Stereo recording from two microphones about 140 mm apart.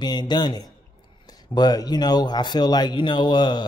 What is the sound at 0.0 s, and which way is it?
Speech, 30° left (ahead or behind).